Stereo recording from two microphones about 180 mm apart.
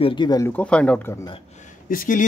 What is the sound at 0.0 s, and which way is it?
Speech, 25° left (ahead or behind).